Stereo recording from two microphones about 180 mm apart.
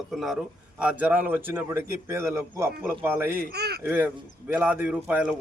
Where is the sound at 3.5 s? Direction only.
65° right (ahead or behind).